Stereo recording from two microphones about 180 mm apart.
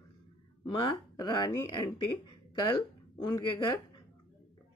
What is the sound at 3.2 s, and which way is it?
Speech, 25° left (ahead or behind).